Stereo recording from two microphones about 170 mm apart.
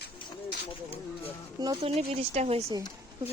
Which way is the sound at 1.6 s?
30° right (ahead or behind).